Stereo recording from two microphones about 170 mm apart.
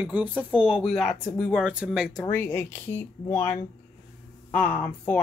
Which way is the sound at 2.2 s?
15° left (ahead or behind).